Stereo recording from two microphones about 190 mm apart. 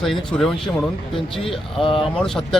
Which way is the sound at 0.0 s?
Centre (ahead or behind).